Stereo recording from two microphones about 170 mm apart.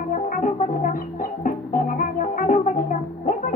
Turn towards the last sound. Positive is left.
turn(degrees=50)  # may be behind; listen again after turning